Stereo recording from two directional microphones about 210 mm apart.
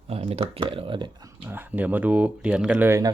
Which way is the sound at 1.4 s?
10° right (ahead or behind).